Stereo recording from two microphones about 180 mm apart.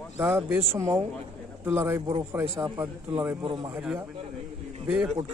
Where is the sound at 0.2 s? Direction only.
10° right (ahead or behind).